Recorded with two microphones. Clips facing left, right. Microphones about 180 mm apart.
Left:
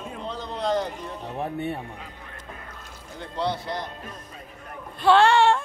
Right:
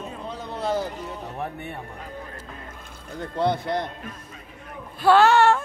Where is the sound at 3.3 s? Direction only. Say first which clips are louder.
Right 4 dB; 50° right (ahead or behind).